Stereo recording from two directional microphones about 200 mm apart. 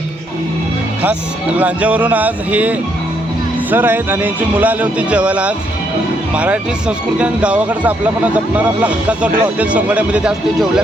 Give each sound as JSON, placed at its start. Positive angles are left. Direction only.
{"t": 1.5, "sound": "speech", "side_deg": -5}